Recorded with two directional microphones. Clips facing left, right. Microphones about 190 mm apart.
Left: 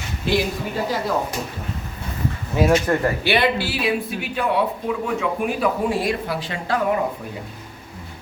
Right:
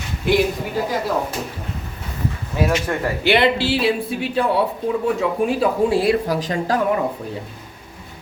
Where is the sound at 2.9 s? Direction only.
Centre (ahead or behind).